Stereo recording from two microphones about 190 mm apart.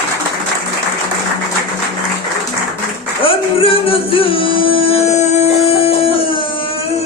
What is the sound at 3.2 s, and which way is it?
Music, 30° left (ahead or behind).